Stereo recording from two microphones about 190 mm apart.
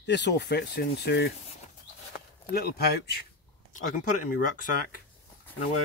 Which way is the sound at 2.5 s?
55° left (ahead or behind).